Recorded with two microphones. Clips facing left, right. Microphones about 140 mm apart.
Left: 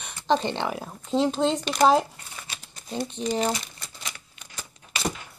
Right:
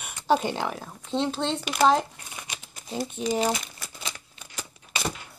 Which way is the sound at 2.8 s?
5° right (ahead or behind).